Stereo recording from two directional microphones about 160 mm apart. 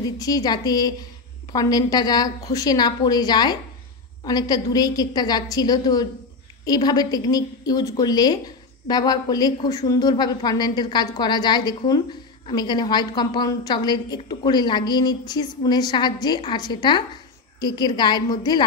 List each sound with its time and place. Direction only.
0.0 s a woman's voice: 25° left (ahead or behind)